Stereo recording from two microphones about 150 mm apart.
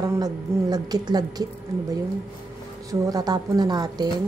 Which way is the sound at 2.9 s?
25° right (ahead or behind).